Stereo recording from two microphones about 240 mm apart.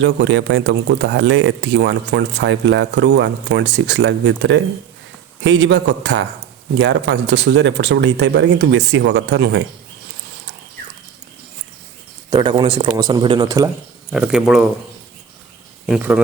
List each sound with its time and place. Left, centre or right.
0.0 s speech: right
12.3 s speech: centre
14.1 s speech: centre
15.9 s speech: centre